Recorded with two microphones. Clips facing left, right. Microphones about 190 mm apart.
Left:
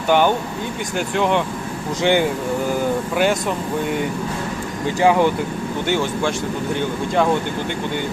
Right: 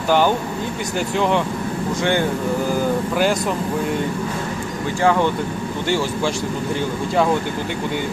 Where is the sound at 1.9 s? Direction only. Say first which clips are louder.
Left 3 dB; 20° left (ahead or behind).